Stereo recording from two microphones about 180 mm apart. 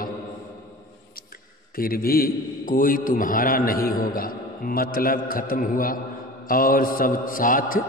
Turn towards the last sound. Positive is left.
turn(degrees=50)  # may be behind; listen again after turning